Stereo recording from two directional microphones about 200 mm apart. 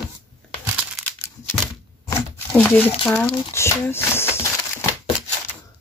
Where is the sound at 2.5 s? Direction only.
5° left (ahead or behind).